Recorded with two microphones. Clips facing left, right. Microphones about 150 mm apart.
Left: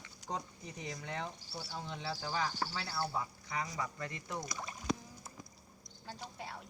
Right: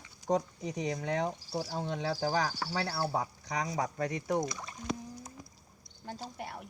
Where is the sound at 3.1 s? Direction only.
90° right; by 4.4 s 70° right (ahead or behind).